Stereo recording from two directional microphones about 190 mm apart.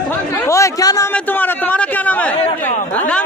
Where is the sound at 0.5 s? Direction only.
15° left (ahead or behind).